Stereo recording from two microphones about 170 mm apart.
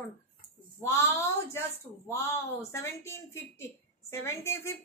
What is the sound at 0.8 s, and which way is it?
A woman's voice, 15° left (ahead or behind).